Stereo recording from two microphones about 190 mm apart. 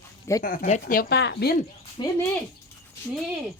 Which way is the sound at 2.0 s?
20° left (ahead or behind).